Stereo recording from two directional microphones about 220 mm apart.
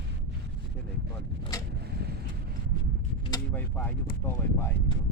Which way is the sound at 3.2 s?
15° left (ahead or behind).